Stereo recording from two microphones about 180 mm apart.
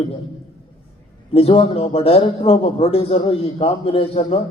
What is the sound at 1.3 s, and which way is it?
A man's voice, 30° left (ahead or behind).